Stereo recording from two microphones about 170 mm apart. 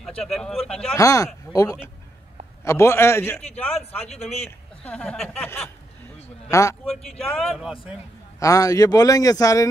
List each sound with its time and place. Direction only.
0.2 s speech: centre (ahead or behind)
0.9 s speech: 20° left (ahead or behind)
6.5 s speech: 20° left (ahead or behind)
7.1 s speech: centre (ahead or behind)
8.4 s speech: 20° left (ahead or behind)